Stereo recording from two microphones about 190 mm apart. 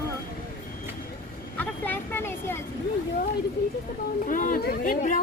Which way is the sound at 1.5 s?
10° left (ahead or behind).